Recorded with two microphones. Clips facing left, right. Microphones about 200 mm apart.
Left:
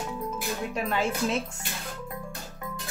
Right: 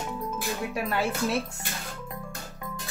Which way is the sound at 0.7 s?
5° right (ahead or behind).